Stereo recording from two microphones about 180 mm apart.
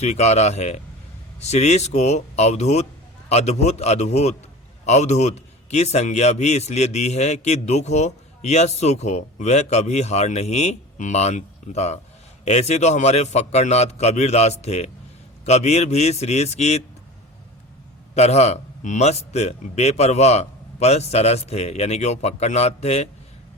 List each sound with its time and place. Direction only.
0.0 s a man's voice: 40° left (ahead or behind)
18.1 s a man's voice: 35° left (ahead or behind)